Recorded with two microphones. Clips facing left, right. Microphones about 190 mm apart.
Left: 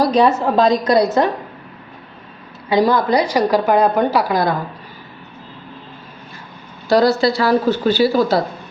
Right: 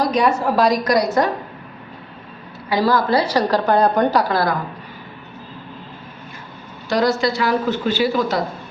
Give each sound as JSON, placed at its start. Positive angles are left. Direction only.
{"t": 0.0, "sound": "a woman's voice", "side_deg": 30}
{"t": 2.6, "sound": "a woman's voice", "side_deg": 20}
{"t": 6.8, "sound": "speech", "side_deg": 35}